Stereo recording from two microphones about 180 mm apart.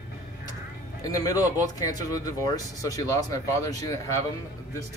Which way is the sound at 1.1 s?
20° left (ahead or behind).